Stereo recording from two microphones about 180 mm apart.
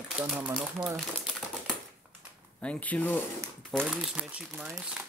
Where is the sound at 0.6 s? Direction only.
5° right (ahead or behind).